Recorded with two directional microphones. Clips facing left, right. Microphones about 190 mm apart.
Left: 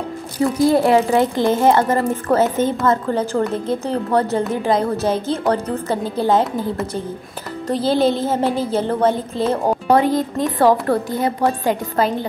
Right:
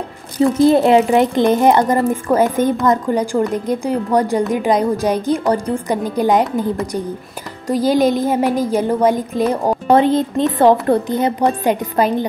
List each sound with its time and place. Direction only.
0.6 s music: 20° right (ahead or behind)
7.6 s music: 10° right (ahead or behind)
9.9 s a woman's voice: 25° right (ahead or behind)